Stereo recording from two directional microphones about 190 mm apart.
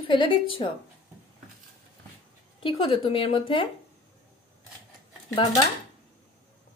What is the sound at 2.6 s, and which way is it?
A woman's voice, 30° left (ahead or behind).